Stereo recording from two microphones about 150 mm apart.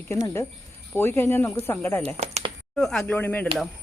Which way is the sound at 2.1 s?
45° right (ahead or behind).